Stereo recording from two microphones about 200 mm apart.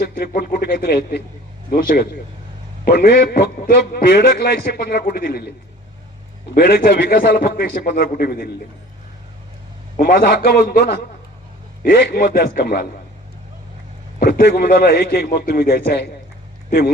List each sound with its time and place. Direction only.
0.0 s a man's voice: 50° left (ahead or behind)
6.5 s a man's voice: 50° left (ahead or behind)
10.0 s a man's voice: 50° left (ahead or behind)
14.2 s a man's voice: 55° left (ahead or behind)